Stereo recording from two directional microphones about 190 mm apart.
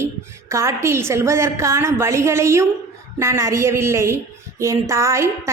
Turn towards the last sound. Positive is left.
turn(degrees=-15)  # may be behind; listen again after turning